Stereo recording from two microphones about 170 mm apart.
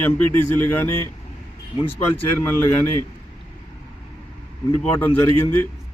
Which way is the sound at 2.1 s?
10° left (ahead or behind).